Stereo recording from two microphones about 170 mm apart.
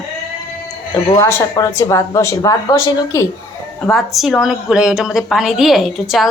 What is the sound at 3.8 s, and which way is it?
A woman's voice, 5° left (ahead or behind).